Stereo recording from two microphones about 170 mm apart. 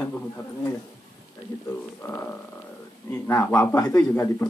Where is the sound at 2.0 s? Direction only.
15° left (ahead or behind).